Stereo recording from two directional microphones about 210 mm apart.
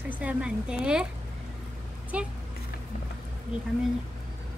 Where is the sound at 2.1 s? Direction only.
5° right (ahead or behind).